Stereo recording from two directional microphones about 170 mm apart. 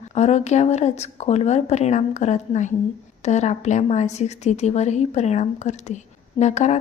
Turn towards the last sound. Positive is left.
turn(degrees=40)  # may be behind; listen again after turning